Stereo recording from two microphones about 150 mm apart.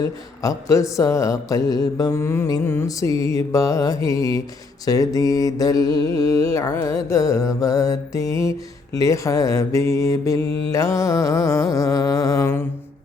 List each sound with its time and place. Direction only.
0.0 s mantra: 20° left (ahead or behind)